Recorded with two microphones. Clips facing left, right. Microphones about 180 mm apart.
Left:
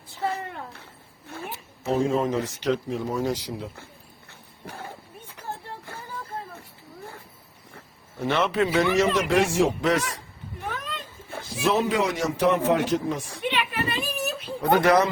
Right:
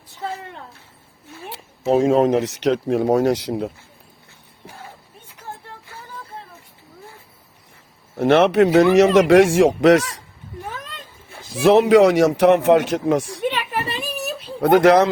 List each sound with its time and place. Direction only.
1.5 s speech: 80° right
8.2 s speech: 80° right
11.6 s speech: 70° right (ahead or behind)
13.4 s a sound: 40° right (ahead or behind)
14.6 s speech: 80° right